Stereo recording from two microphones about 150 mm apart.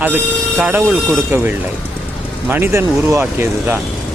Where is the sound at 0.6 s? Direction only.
10° right (ahead or behind).